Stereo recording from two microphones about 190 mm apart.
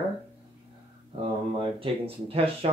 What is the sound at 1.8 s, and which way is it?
Speech, 30° right (ahead or behind).